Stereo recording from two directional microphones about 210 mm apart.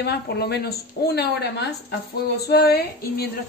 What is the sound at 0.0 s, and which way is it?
Speech, 50° left (ahead or behind).